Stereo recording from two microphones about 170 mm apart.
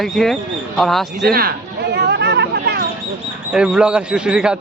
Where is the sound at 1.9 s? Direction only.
80° right.